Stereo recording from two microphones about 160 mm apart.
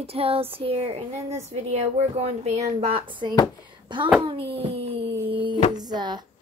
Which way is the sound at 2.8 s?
35° right (ahead or behind).